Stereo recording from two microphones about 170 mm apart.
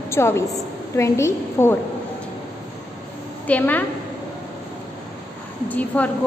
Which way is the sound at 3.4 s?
10° left (ahead or behind).